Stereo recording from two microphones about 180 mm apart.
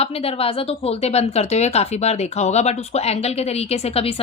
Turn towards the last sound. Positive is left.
turn(degrees=35)  # may be behind; listen again after turning